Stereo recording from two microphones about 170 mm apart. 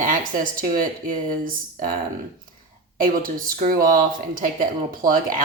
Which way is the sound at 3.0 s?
55° right (ahead or behind).